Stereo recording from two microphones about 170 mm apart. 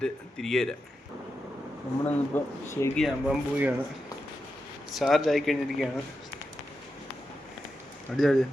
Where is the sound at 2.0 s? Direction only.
15° left (ahead or behind).